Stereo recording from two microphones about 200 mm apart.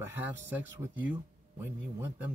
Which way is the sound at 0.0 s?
10° right (ahead or behind).